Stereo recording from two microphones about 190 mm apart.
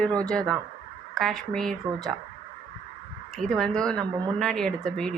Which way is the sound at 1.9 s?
20° right (ahead or behind).